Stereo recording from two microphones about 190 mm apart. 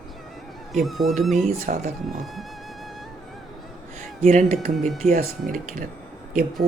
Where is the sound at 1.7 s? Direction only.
45° right (ahead or behind).